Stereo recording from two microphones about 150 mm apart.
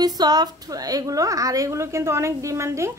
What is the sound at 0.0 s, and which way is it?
A woman's voice, 25° right (ahead or behind).